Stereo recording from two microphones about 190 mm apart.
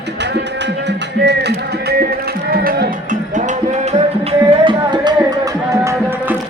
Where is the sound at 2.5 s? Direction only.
50° right (ahead or behind).